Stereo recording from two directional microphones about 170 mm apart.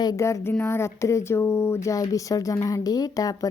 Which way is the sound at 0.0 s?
20° left (ahead or behind).